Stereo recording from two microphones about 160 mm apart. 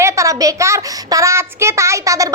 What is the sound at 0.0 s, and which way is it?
A child's voice, 20° right (ahead or behind).